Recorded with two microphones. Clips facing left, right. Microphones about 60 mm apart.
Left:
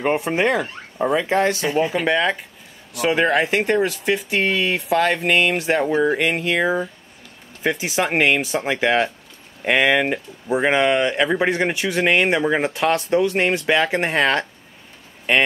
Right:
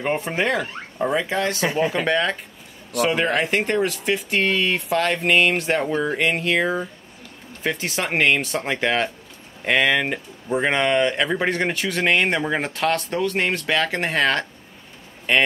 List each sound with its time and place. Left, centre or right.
0.0 s speech: centre
1.3 s speech: left
1.6 s speech: right
1.9 s speech: centre